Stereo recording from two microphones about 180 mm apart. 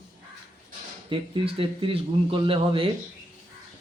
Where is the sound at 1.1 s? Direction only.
30° right (ahead or behind).